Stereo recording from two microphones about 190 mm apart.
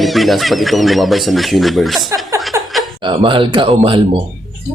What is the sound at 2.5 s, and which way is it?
Chuckle, 15° right (ahead or behind).